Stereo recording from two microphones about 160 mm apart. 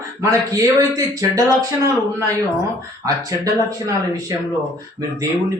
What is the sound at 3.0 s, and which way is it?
Speech, 20° right (ahead or behind).